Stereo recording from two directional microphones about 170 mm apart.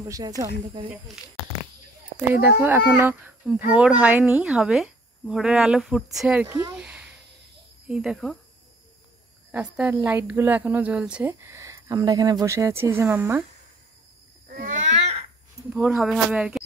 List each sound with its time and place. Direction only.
0.0 s speech: 25° right (ahead or behind)
1.0 s a woman's voice: centre (ahead or behind)
9.5 s a woman's voice: 5° right (ahead or behind)
14.5 s a sound: 50° right (ahead or behind)
15.7 s speech: 5° right (ahead or behind)